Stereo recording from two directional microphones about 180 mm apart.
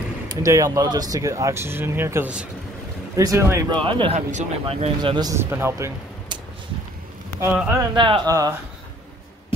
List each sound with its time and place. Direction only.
0.4 s speech: 15° right (ahead or behind)
3.7 s speech: 25° right (ahead or behind)
7.3 s speech: 10° right (ahead or behind)
7.9 s speech: 25° right (ahead or behind)